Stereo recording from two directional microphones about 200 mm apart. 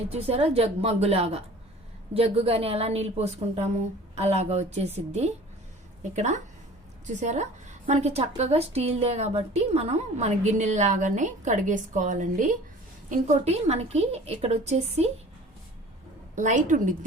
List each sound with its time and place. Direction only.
0.1 s a woman's voice: 30° right (ahead or behind)
16.3 s a woman's voice: 35° right (ahead or behind)